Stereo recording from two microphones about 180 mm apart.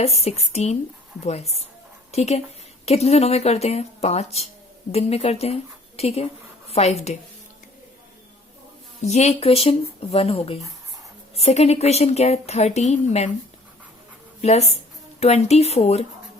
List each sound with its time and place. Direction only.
0.0 s a woman's voice: 35° left (ahead or behind)
9.0 s a woman's voice: 40° left (ahead or behind)
14.4 s a woman's voice: 35° left (ahead or behind)